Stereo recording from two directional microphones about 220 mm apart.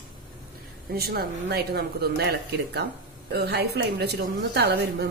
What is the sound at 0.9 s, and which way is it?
A woman's voice, 45° right (ahead or behind).